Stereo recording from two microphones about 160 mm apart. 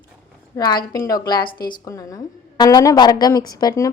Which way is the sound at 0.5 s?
25° left (ahead or behind).